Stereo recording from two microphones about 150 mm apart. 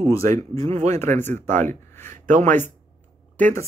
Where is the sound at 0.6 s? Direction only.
50° right (ahead or behind).